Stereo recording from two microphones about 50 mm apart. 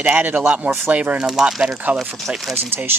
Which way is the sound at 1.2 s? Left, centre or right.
Centre.